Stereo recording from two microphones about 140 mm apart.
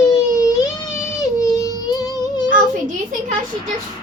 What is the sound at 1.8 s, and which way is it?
Music, 25° left (ahead or behind).